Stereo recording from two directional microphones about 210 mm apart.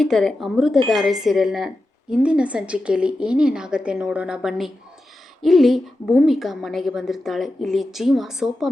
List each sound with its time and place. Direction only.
0.0 s speech: centre (ahead or behind)